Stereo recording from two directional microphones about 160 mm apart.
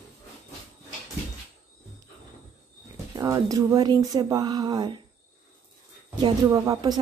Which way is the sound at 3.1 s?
20° right (ahead or behind).